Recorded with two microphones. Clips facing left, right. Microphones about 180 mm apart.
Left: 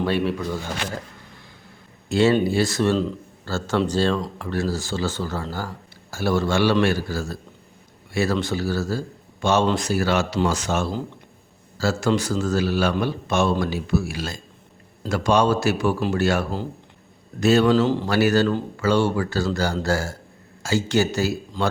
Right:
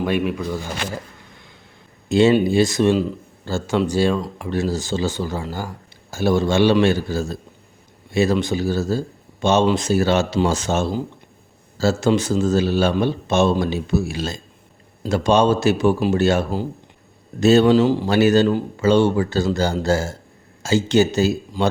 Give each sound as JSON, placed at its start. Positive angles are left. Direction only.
{"t": 0.0, "sound": "speech", "side_deg": -10}
{"t": 2.0, "sound": "speech", "side_deg": -20}
{"t": 17.7, "sound": "speech", "side_deg": -10}
{"t": 18.1, "sound": "speech", "side_deg": -20}